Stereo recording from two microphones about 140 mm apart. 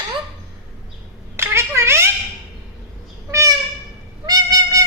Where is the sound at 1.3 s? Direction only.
20° right (ahead or behind).